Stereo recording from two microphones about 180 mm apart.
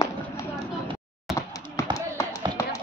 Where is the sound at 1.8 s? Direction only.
15° left (ahead or behind).